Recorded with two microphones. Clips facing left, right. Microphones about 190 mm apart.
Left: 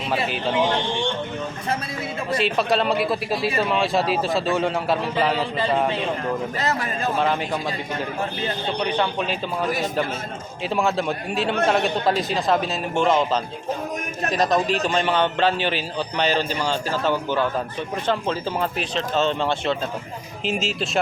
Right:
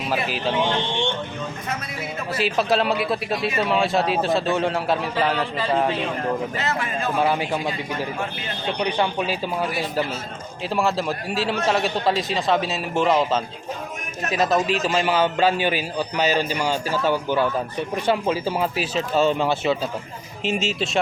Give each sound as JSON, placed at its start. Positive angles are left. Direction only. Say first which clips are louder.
{"t": 2.3, "sound": "a man's voice", "louder": "even", "side_deg": 0}
{"t": 6.6, "sound": "a man's voice", "louder": "left 1 dB", "side_deg": 40}
{"t": 7.2, "sound": "a man's voice", "louder": "right 2 dB", "side_deg": -10}
{"t": 9.0, "sound": "a man's voice", "louder": "right 1 dB", "side_deg": -10}